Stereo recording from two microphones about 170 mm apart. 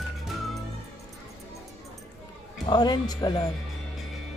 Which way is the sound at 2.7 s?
25° left (ahead or behind).